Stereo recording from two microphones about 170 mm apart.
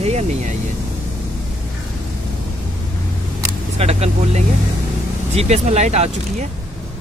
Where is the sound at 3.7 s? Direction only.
35° right (ahead or behind).